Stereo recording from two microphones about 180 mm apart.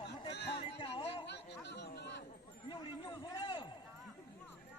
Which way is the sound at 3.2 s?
30° left (ahead or behind).